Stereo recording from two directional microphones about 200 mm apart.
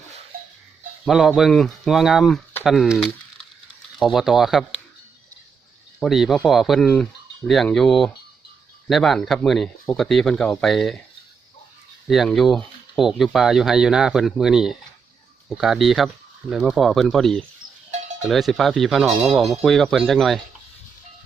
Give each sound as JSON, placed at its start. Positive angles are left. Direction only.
{"t": 1.0, "sound": "speech", "side_deg": 0}
{"t": 6.0, "sound": "speech", "side_deg": 0}
{"t": 12.0, "sound": "speech", "side_deg": 0}